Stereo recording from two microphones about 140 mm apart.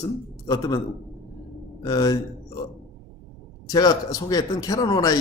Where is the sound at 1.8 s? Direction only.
25° left (ahead or behind).